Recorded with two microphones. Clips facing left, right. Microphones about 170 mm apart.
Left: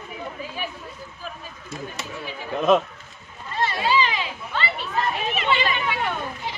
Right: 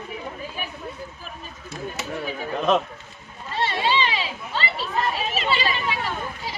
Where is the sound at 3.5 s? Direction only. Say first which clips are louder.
Left 1 dB; 30° right (ahead or behind).